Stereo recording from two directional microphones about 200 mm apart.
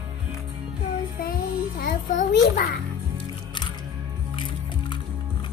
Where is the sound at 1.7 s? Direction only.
45° left (ahead or behind).